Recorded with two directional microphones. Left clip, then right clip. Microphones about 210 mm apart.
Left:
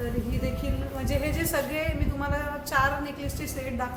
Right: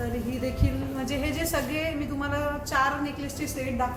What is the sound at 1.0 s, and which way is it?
A woman's voice, 15° left (ahead or behind).